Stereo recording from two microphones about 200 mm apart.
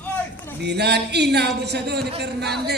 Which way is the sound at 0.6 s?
55° right (ahead or behind).